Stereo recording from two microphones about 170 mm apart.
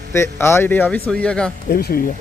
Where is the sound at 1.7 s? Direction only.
65° left (ahead or behind).